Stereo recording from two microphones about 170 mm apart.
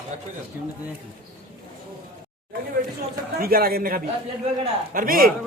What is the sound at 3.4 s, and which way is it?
A man's voice, 60° right (ahead or behind).